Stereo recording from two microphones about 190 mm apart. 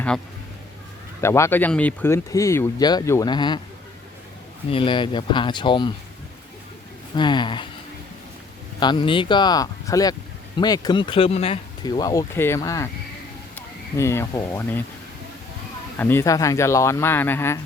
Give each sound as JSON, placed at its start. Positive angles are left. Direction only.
{"t": 1.2, "sound": "speech", "side_deg": 15}
{"t": 4.7, "sound": "speech", "side_deg": 25}
{"t": 7.2, "sound": "speech", "side_deg": 25}
{"t": 8.8, "sound": "speech", "side_deg": 25}
{"t": 16.0, "sound": "speech", "side_deg": 10}